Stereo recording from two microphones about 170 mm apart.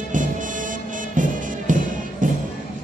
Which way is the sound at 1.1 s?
50° right (ahead or behind).